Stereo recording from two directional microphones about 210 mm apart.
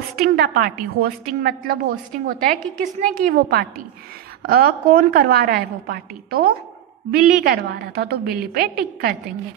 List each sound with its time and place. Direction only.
0.2 s a woman's voice: 45° right (ahead or behind)